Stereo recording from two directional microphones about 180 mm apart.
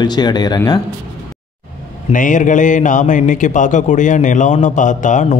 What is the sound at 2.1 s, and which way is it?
Speech, 45° left (ahead or behind).